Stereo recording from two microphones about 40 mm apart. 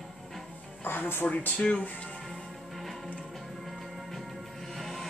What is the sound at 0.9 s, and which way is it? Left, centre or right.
Speech, left.